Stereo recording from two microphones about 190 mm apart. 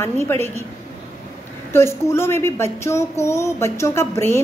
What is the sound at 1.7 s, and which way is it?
A woman's voice, 15° left (ahead or behind).